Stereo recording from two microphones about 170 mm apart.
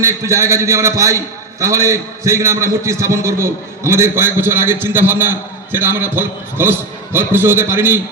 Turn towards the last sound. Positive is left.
turn(degrees=-15)  # may be behind; listen again after turning